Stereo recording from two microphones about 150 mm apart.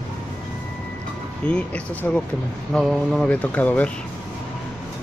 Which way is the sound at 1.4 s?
10° left (ahead or behind).